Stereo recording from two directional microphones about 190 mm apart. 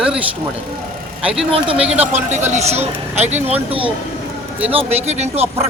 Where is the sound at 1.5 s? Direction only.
30° right (ahead or behind).